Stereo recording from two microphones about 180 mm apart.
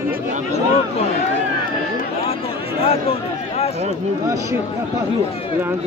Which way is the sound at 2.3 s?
35° left (ahead or behind).